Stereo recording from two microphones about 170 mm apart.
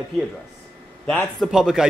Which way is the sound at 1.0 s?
5° left (ahead or behind).